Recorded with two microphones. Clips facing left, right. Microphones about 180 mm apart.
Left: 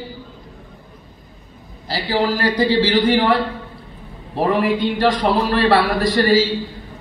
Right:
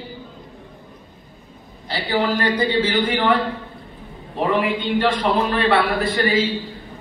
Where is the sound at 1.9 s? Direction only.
35° left (ahead or behind).